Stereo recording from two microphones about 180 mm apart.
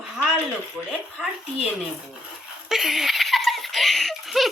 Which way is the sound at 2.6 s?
Centre (ahead or behind).